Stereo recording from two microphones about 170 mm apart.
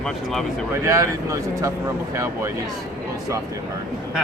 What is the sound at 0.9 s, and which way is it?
Speech, 15° right (ahead or behind).